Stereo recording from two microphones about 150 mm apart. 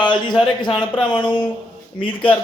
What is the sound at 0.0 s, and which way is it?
Speech, 30° left (ahead or behind).